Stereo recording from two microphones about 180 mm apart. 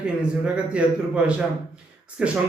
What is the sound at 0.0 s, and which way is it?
A man's voice, 5° right (ahead or behind).